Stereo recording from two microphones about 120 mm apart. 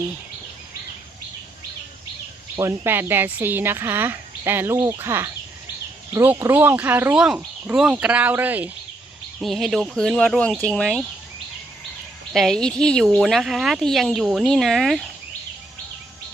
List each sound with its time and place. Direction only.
2.6 s speech: 20° right (ahead or behind)
9.4 s speech: centre (ahead or behind)
12.3 s speech: centre (ahead or behind)